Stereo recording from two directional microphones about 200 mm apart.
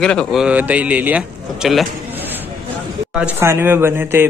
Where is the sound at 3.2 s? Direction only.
10° right (ahead or behind).